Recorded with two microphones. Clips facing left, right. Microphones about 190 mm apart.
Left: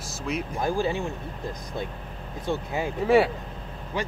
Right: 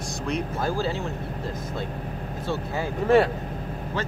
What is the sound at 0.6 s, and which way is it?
Speech, 15° left (ahead or behind).